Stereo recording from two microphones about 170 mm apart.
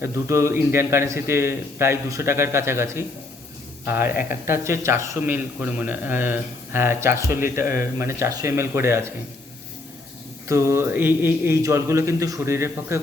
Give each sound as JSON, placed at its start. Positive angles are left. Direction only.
{"t": 0.0, "sound": "a man's voice", "side_deg": -15}
{"t": 10.5, "sound": "a man's voice", "side_deg": -15}